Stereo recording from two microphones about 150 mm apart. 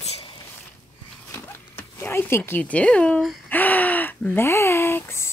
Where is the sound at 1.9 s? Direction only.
15° left (ahead or behind).